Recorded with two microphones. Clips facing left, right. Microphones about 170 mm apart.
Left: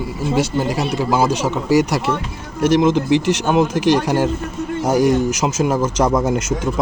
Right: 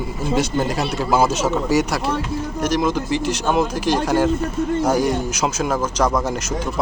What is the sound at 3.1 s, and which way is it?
Speech, 90° left.